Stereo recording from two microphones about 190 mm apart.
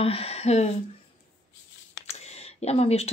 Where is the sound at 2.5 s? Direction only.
35° left (ahead or behind).